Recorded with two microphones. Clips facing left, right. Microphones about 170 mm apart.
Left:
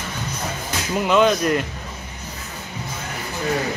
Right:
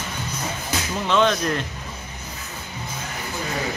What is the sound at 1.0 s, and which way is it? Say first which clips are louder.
Speech: left 3 dB; 5° left (ahead or behind).